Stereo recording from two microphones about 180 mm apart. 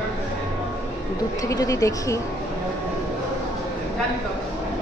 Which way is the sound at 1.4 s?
20° left (ahead or behind).